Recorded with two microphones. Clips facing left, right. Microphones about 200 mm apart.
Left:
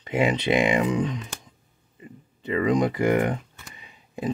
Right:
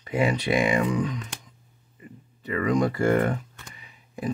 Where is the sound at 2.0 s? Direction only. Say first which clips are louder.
Left 3 dB; 20° left (ahead or behind).